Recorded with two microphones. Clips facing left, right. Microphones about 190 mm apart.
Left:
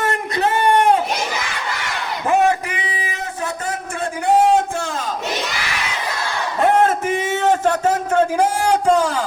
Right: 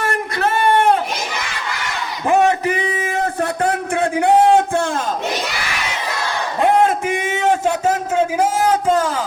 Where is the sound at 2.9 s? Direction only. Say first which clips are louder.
Right 7 dB; 50° right (ahead or behind).